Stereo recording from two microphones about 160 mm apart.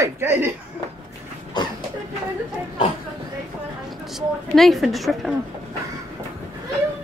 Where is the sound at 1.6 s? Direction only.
30° left (ahead or behind).